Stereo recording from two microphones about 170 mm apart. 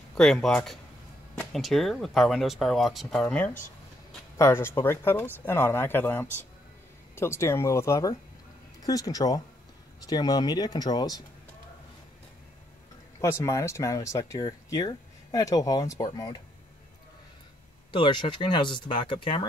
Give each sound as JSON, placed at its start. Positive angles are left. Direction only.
{"t": 0.1, "sound": "speech", "side_deg": 0}
{"t": 13.2, "sound": "speech", "side_deg": 20}
{"t": 17.9, "sound": "speech", "side_deg": 30}